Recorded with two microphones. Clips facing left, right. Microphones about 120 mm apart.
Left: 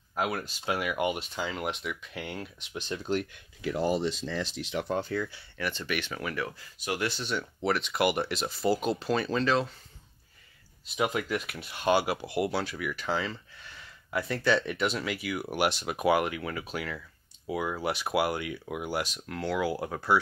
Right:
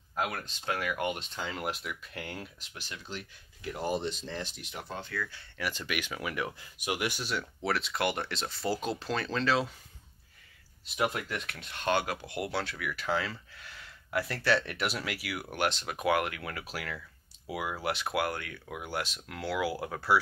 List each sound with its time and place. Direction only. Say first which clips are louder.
0.1 s speech: left 3 dB; 10° left (ahead or behind)
2.7 s speech: left 14 dB; 25° left (ahead or behind)
3.1 s speech: left 12 dB; 55° left (ahead or behind); by 4.9 s 90° left
5.6 s speech: left 2 dB; 5° right (ahead or behind)
7.2 s speech: left 3 dB; centre (ahead or behind)
11.0 s speech: left 3 dB; centre (ahead or behind)